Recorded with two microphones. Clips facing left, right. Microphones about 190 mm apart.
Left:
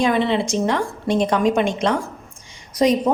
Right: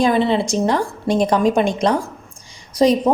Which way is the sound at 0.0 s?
35° right (ahead or behind).